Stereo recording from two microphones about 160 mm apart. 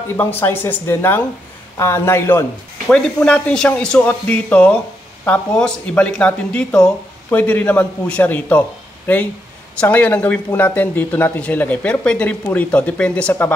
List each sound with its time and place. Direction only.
0.2 s speech: 10° left (ahead or behind)